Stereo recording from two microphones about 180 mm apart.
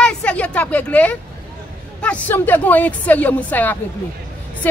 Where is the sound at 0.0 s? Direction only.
5° left (ahead or behind).